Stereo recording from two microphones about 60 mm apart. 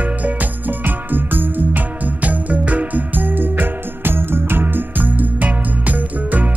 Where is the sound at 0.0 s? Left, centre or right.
Right.